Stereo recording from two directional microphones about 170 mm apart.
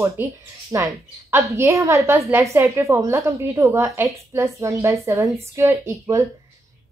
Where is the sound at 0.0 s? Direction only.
15° right (ahead or behind).